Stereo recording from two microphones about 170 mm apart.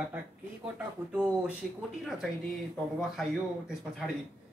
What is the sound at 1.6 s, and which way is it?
Speech, centre (ahead or behind).